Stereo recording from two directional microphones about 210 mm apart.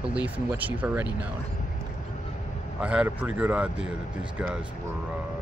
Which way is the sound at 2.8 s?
5° right (ahead or behind).